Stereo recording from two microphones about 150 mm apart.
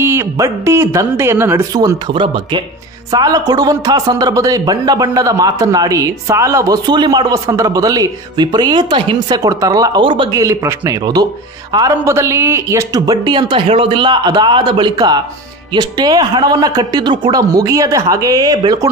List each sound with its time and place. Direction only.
0.0 s a man's voice: 20° right (ahead or behind)
11.9 s a man's voice: 15° right (ahead or behind)